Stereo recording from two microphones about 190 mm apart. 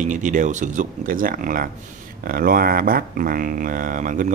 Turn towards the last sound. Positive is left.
turn(degrees=-45)  # may be behind; listen again after turning